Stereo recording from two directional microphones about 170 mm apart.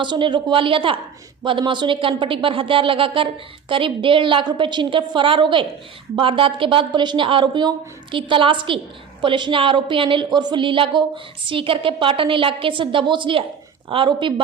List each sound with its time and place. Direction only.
0.0 s a woman's voice: 25° right (ahead or behind)